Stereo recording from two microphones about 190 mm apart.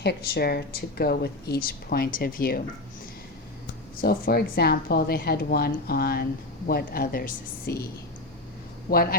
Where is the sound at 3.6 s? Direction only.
55° left (ahead or behind).